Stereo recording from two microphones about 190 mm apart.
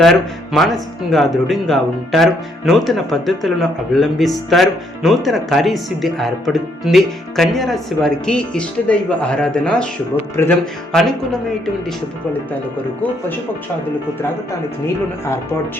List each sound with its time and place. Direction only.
0.0 s speech: centre (ahead or behind)
10.4 s speech: 15° left (ahead or behind)
10.9 s speech: centre (ahead or behind)